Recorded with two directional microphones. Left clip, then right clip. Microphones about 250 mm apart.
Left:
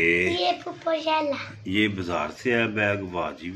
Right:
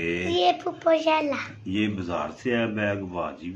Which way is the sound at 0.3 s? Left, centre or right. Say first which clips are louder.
Right 3 dB; right.